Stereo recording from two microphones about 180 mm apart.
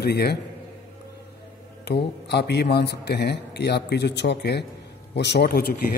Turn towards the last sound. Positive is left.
turn(degrees=60)  # may be behind; listen again after turning